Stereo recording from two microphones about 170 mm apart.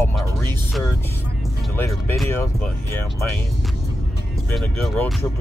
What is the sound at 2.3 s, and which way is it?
Speech, 15° left (ahead or behind).